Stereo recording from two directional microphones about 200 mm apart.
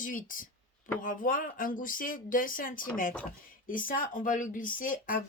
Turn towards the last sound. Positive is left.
turn(degrees=45)  # may be behind; listen again after turning